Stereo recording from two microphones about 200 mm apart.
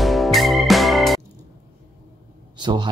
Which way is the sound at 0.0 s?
Centre (ahead or behind).